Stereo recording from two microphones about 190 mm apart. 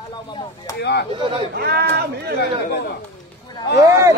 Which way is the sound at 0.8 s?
60° left (ahead or behind).